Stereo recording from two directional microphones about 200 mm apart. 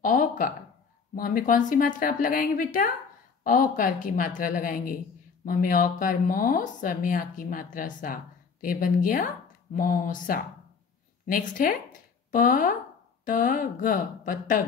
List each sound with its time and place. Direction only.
0.0 s speech: 45° left (ahead or behind)